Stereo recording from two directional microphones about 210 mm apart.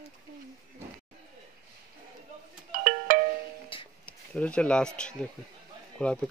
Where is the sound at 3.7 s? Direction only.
25° left (ahead or behind).